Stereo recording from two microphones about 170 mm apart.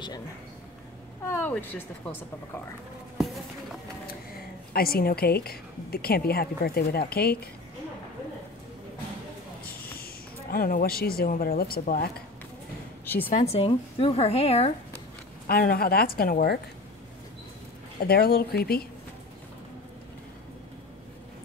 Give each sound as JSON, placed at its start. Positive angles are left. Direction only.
{"t": 1.3, "sound": "speech", "side_deg": 10}
{"t": 4.7, "sound": "a woman's voice", "side_deg": 60}
{"t": 10.5, "sound": "a woman's voice", "side_deg": 60}
{"t": 13.0, "sound": "speech", "side_deg": 10}
{"t": 13.3, "sound": "a woman's voice", "side_deg": 40}
{"t": 15.4, "sound": "a woman's voice", "side_deg": 60}
{"t": 17.9, "sound": "a woman's voice", "side_deg": 65}